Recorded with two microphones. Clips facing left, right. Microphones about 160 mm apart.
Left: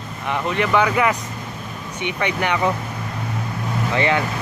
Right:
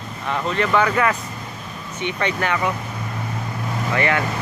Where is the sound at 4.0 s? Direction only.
20° left (ahead or behind).